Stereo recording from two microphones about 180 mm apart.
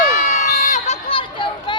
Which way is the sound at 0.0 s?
45° left (ahead or behind).